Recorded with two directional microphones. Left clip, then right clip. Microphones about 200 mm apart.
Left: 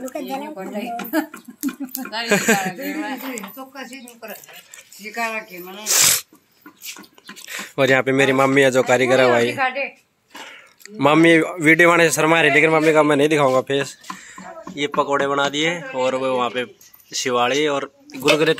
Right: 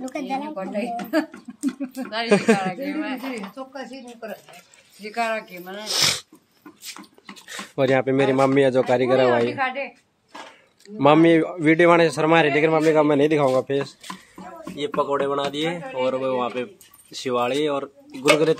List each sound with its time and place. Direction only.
0.2 s speech: 35° right (ahead or behind)
1.8 s a sound: 35° right (ahead or behind)
2.2 s speech: 10° right (ahead or behind)
3.0 s speech: 35° right (ahead or behind)
5.1 s speech: centre (ahead or behind)
7.4 s speech: 5° right (ahead or behind)
9.5 s a woman's voice: 25° left (ahead or behind)
10.3 s speech: centre (ahead or behind)
15.0 s speech: 5° left (ahead or behind)